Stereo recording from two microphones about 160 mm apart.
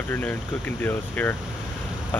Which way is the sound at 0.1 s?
10° left (ahead or behind).